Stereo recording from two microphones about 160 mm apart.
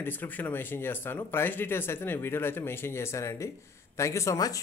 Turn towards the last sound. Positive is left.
turn(degrees=20)  # may be behind; listen again after turning